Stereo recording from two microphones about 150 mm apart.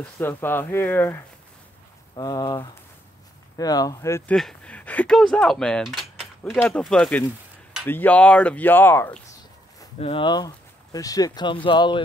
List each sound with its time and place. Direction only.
0.0 s speech: 15° left (ahead or behind)
2.1 s speech: 25° left (ahead or behind)
4.3 s speech: 5° left (ahead or behind)
9.9 s speech: 40° left (ahead or behind)